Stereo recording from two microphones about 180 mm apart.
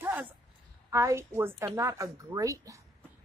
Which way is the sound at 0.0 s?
10° right (ahead or behind).